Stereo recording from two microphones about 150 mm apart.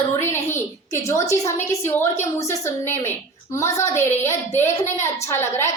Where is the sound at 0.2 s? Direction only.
15° left (ahead or behind).